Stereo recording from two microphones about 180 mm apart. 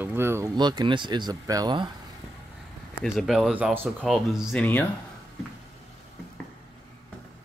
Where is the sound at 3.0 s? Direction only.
Centre (ahead or behind).